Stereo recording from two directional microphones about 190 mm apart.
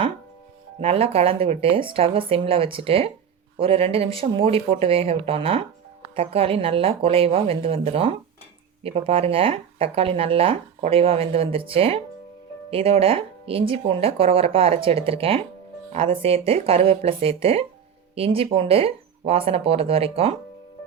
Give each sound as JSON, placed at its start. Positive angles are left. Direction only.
{"t": 0.8, "sound": "speech", "side_deg": -30}